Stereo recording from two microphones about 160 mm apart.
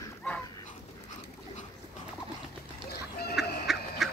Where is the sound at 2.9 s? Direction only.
75° left (ahead or behind).